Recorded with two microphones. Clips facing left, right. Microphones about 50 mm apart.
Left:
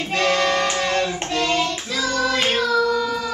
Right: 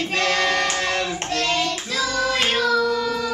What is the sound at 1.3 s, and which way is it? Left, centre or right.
Hands, centre.